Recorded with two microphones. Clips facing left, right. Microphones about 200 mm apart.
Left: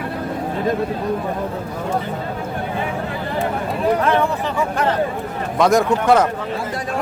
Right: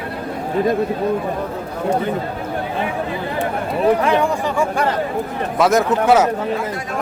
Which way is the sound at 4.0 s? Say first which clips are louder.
Right 1 dB; 15° right (ahead or behind).